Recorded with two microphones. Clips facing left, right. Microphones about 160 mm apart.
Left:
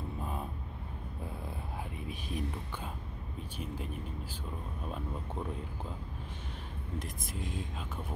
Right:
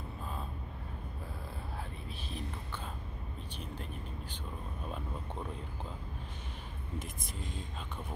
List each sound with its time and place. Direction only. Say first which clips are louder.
0.2 s vehicle: left 3 dB; 20° left (ahead or behind)
2.0 s speech: left 5 dB; 10° left (ahead or behind)
7.0 s speech: left 3 dB; 5° left (ahead or behind)